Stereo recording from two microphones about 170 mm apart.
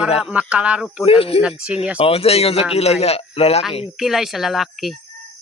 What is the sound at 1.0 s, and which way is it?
Speech, 35° left (ahead or behind).